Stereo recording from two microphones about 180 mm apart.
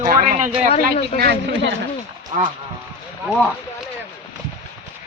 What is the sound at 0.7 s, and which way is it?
Speech, 35° left (ahead or behind).